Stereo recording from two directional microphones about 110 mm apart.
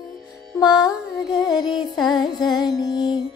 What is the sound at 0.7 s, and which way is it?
Music, 35° left (ahead or behind).